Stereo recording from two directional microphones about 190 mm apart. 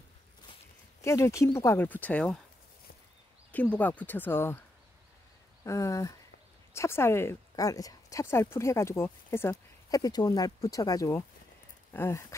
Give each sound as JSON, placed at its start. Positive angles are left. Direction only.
{"t": 1.0, "sound": "speech", "side_deg": 15}
{"t": 3.5, "sound": "speech", "side_deg": 10}
{"t": 5.6, "sound": "speech", "side_deg": 15}